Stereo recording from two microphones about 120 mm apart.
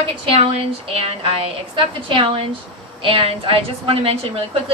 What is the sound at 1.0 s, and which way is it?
A woman's voice, 50° right (ahead or behind).